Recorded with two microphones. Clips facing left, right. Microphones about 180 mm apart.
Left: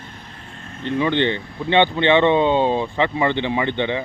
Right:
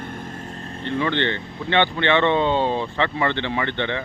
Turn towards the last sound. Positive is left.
turn(degrees=15)  # may be behind; listen again after turning